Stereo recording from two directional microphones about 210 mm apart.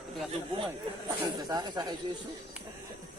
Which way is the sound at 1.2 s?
20° right (ahead or behind).